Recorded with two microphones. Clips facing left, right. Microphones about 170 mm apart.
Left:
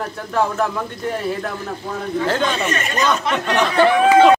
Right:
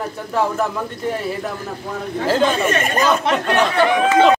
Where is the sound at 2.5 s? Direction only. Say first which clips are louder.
Right 3 dB; 50° right (ahead or behind).